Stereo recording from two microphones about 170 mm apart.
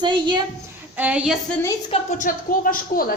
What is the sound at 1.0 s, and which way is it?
Speech, 5° right (ahead or behind).